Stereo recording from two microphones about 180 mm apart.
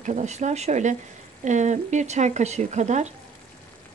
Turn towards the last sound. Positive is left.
turn(degrees=-40)  # may be behind; listen again after turning